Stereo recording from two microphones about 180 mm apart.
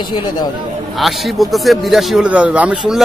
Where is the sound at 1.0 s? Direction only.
Centre (ahead or behind).